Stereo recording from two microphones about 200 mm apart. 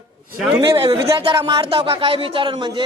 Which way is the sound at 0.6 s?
20° right (ahead or behind).